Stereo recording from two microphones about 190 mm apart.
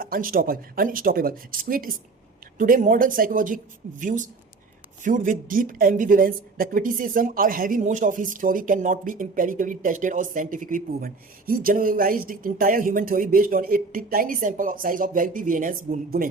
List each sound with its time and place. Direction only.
0.0 s speech: 50° right (ahead or behind)